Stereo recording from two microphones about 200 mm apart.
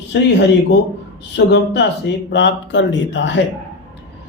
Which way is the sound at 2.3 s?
65° left (ahead or behind).